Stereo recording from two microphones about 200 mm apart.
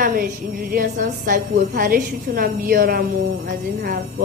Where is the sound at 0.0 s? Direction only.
45° right (ahead or behind).